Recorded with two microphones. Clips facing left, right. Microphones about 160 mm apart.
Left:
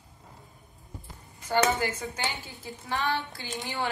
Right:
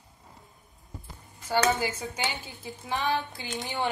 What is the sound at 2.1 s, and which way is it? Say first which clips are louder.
A woman's voice: right 1 dB; 20° right (ahead or behind).